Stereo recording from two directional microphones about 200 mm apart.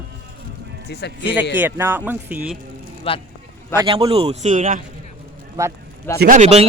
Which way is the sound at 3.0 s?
30° left (ahead or behind).